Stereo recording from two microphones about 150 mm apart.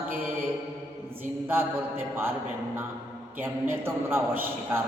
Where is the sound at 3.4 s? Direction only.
15° right (ahead or behind).